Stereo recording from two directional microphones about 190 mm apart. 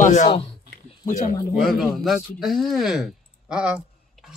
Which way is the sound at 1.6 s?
Centre (ahead or behind).